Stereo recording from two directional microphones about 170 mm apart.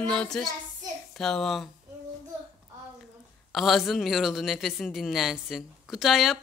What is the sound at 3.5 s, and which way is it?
A woman's voice, centre (ahead or behind).